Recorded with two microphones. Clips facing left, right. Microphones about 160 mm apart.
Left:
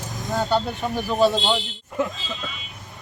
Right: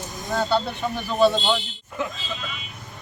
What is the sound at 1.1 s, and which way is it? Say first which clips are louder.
Speech: even; 15° left (ahead or behind).